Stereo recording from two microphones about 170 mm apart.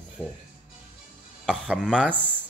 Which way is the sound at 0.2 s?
10° left (ahead or behind).